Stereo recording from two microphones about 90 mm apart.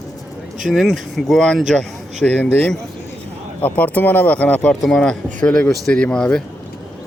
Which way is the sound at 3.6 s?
15° left (ahead or behind).